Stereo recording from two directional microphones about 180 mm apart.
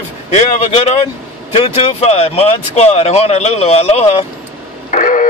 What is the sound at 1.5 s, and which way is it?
Speech, 35° left (ahead or behind).